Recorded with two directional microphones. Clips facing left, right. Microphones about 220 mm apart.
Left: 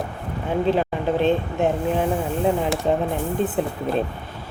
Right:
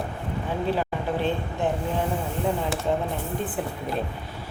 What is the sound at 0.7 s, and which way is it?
Speech, 20° left (ahead or behind).